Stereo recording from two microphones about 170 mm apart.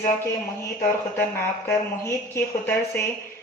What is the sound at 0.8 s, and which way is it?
Speech, 15° left (ahead or behind).